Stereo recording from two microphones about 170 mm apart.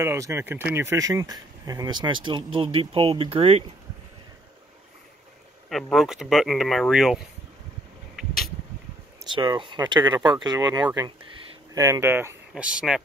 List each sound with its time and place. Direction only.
0.0 s speech: 15° right (ahead or behind); by 3.6 s 35° right (ahead or behind)
5.7 s speech: centre (ahead or behind)
9.2 s speech: 25° right (ahead or behind); by 13.0 s 5° right (ahead or behind)